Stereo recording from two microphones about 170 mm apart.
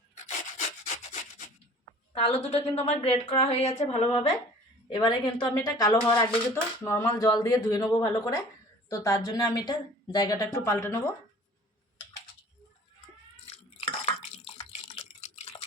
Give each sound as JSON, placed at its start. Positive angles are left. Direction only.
{"t": 0.3, "sound": "rub", "side_deg": 45}
{"t": 2.1, "sound": "a woman's voice", "side_deg": 35}
{"t": 4.9, "sound": "speech", "side_deg": 25}
{"t": 13.4, "sound": "drip", "side_deg": 40}